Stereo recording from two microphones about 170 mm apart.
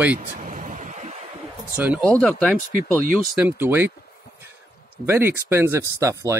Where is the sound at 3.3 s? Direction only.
10° right (ahead or behind).